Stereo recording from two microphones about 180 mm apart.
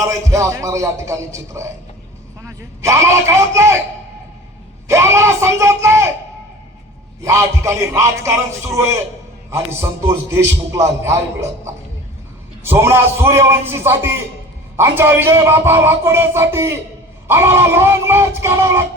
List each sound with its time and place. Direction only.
0.0 s speech: 15° right (ahead or behind)
4.9 s speech: 15° right (ahead or behind)
7.3 s speech: 15° right (ahead or behind)
10.1 s speech: 15° right (ahead or behind)